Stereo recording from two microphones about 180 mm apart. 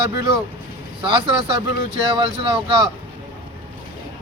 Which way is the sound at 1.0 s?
25° right (ahead or behind).